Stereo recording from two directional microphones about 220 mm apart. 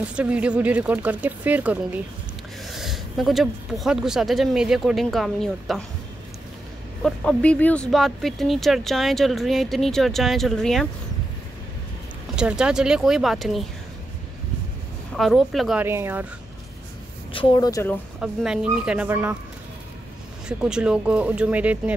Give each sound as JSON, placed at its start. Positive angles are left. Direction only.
{"t": 0.0, "sound": "speech", "side_deg": -5}
{"t": 7.0, "sound": "speech", "side_deg": 5}
{"t": 12.4, "sound": "speech", "side_deg": -5}
{"t": 15.1, "sound": "speech", "side_deg": 0}
{"t": 17.3, "sound": "speech", "side_deg": 25}
{"t": 18.2, "sound": "speech", "side_deg": -5}
{"t": 20.4, "sound": "speech", "side_deg": -5}